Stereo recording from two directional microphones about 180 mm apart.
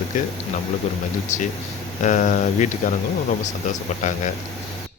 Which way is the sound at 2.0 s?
45° left (ahead or behind).